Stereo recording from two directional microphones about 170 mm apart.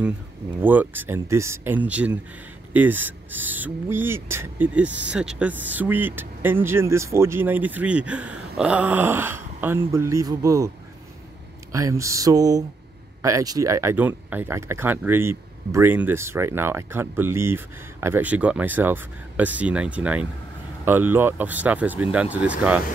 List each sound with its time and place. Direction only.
0.6 s speech: 10° right (ahead or behind)
11.7 s speech: 20° right (ahead or behind)